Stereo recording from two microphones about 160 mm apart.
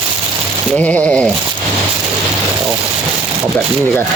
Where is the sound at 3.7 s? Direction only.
10° left (ahead or behind).